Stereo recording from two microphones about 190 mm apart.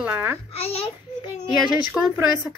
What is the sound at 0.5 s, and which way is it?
Speech, 30° left (ahead or behind).